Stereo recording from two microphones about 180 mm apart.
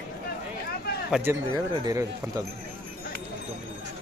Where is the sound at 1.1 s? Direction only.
10° right (ahead or behind).